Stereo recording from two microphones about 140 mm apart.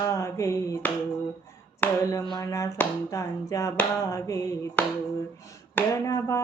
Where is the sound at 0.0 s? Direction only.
20° left (ahead or behind).